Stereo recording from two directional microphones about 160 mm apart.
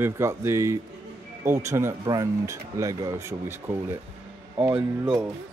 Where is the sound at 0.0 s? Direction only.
15° right (ahead or behind).